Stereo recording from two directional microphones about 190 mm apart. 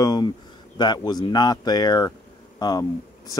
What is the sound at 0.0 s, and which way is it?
Speech, 20° left (ahead or behind).